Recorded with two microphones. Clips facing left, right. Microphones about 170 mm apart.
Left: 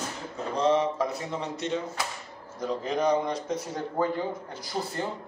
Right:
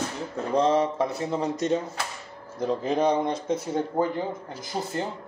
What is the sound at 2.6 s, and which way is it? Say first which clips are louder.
Speech: right 4 dB; 30° right (ahead or behind).